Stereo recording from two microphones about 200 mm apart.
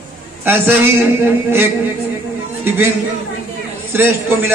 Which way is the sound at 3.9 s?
10° right (ahead or behind).